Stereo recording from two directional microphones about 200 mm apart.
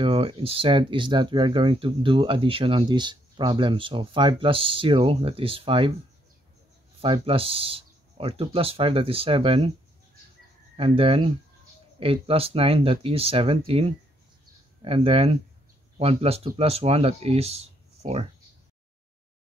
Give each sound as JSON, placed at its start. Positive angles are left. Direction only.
{"t": 0.0, "sound": "speech", "side_deg": -25}
{"t": 7.0, "sound": "speech", "side_deg": -25}
{"t": 10.8, "sound": "speech", "side_deg": -30}